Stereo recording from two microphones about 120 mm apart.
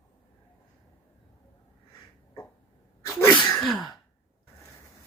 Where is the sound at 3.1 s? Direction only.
25° left (ahead or behind).